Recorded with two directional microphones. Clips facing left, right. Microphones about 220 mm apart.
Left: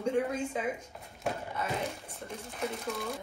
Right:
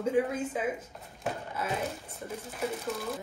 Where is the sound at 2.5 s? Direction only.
5° right (ahead or behind).